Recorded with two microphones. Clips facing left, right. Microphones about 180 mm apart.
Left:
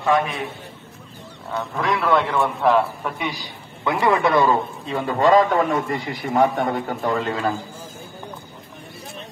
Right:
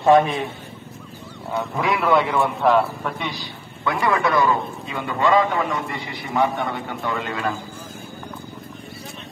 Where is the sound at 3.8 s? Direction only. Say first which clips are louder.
Left 2 dB; 25° left (ahead or behind).